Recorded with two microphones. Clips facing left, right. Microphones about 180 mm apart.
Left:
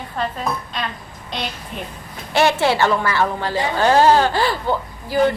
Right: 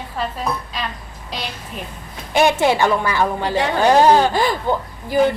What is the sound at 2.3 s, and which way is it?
Speech, 15° right (ahead or behind).